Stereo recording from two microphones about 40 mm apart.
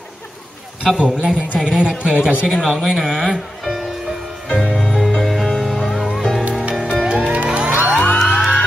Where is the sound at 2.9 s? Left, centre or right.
Centre.